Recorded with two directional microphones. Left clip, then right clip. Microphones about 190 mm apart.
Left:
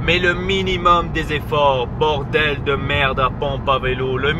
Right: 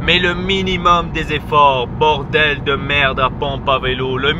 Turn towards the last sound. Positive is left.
turn(degrees=-20)  # may be behind; listen again after turning